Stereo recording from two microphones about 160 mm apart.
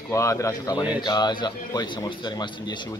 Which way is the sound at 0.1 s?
20° left (ahead or behind).